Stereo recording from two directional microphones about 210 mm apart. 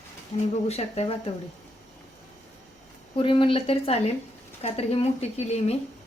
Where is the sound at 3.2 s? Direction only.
25° left (ahead or behind).